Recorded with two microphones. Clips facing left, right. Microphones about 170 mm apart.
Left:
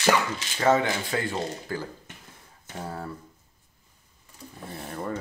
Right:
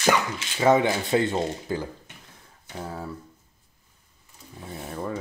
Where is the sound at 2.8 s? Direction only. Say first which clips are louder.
Right 1 dB; centre (ahead or behind).